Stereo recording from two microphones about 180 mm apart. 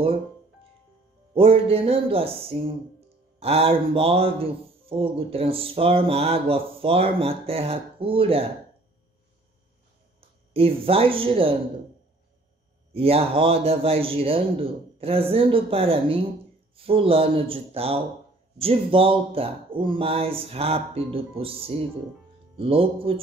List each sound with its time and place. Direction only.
1.3 s speech: 30° right (ahead or behind)
10.5 s speech: 30° right (ahead or behind)
12.9 s speech: 30° right (ahead or behind)